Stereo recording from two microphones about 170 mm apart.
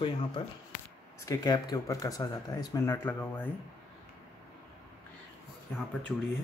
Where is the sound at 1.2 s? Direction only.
20° left (ahead or behind).